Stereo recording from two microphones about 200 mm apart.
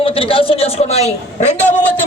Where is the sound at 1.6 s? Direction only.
5° left (ahead or behind).